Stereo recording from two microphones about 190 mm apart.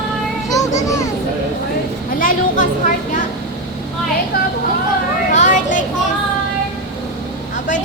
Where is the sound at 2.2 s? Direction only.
45° left (ahead or behind).